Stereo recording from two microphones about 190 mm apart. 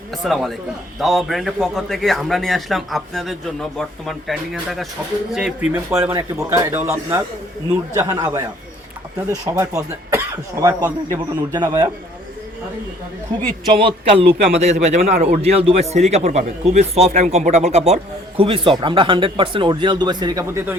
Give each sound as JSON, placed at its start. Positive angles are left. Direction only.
{"t": 0.1, "sound": "a man's voice", "side_deg": 0}
{"t": 13.7, "sound": "a man's voice", "side_deg": -25}